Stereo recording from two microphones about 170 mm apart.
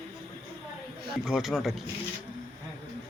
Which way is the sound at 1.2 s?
Centre (ahead or behind).